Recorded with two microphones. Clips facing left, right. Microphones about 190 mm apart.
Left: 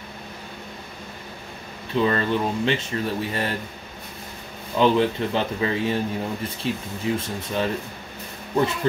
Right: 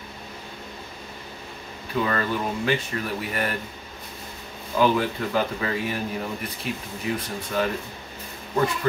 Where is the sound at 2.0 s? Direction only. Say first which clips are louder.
Left 4 dB; 25° left (ahead or behind).